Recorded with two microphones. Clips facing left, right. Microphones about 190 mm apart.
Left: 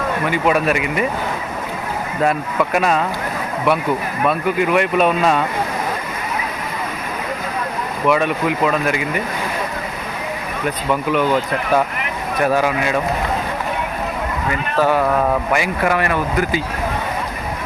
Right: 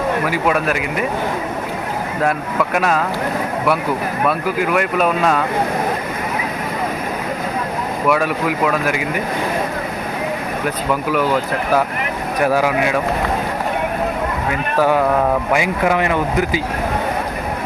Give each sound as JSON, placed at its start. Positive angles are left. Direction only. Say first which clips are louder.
{"t": 0.3, "sound": "speech", "louder": "left 1 dB", "side_deg": 0}
{"t": 2.7, "sound": "speech", "louder": "left 1 dB", "side_deg": 0}
{"t": 4.3, "sound": "speech", "louder": "left 2 dB", "side_deg": 0}
{"t": 8.0, "sound": "speech", "louder": "left 1 dB", "side_deg": -5}
{"t": 12.5, "sound": "speech", "louder": "right 1 dB", "side_deg": -10}
{"t": 14.8, "sound": "speech", "louder": "right 1 dB", "side_deg": -15}